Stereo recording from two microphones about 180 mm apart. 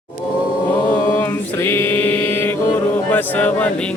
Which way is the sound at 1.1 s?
15° left (ahead or behind).